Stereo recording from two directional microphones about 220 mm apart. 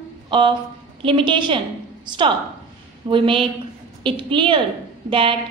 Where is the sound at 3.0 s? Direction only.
25° right (ahead or behind).